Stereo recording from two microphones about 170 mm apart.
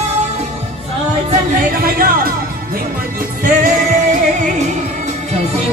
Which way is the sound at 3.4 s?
50° right (ahead or behind).